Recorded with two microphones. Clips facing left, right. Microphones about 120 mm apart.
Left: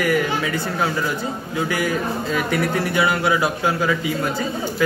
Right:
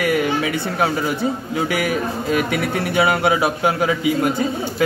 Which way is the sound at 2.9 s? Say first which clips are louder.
Right 4 dB; 25° right (ahead or behind).